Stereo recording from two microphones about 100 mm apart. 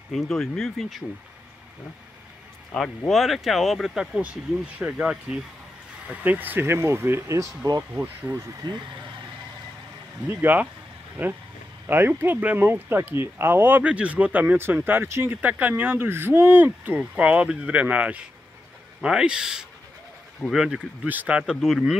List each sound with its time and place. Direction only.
0.1 s speech: 5° left (ahead or behind)
3.1 s speech: centre (ahead or behind); by 7.8 s 35° right (ahead or behind)
7.9 s speech: 20° right (ahead or behind)
8.6 s speech: 45° right (ahead or behind)
10.2 s speech: 20° right (ahead or behind); by 21.9 s 5° right (ahead or behind)